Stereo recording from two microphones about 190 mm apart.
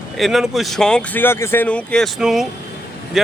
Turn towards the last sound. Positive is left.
turn(degrees=0)  # may be behind; listen again after turning